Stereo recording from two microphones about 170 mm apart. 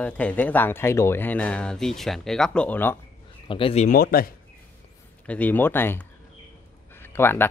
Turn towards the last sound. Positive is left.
turn(degrees=15)  # may be behind; listen again after turning